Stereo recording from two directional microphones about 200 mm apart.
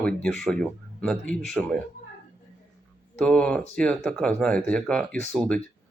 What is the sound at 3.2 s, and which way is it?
Speech, 5° left (ahead or behind).